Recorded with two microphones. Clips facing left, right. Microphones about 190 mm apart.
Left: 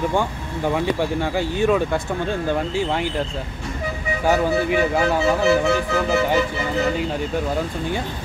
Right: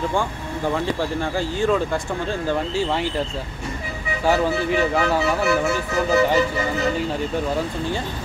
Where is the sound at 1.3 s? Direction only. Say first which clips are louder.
Left 2 dB; 20° left (ahead or behind).